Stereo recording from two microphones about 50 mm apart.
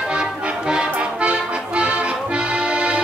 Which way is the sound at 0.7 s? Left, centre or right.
Centre.